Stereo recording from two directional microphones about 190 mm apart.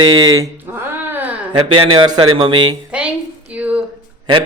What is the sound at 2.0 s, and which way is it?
Speech, 25° right (ahead or behind).